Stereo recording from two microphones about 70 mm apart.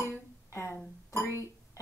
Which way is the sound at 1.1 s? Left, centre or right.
Left.